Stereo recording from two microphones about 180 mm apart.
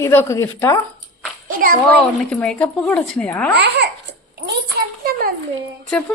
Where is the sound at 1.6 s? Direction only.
55° right (ahead or behind).